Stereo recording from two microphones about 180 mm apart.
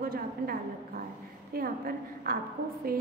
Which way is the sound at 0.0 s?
55° right (ahead or behind).